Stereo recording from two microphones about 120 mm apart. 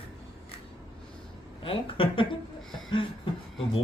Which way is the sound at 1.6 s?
50° left (ahead or behind).